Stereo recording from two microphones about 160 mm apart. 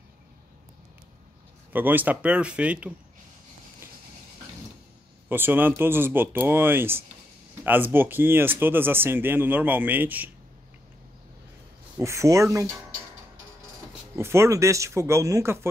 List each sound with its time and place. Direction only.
1.7 s speech: 10° right (ahead or behind)
5.3 s speech: 15° right (ahead or behind)
12.0 s speech: 20° right (ahead or behind)
14.1 s speech: 15° right (ahead or behind)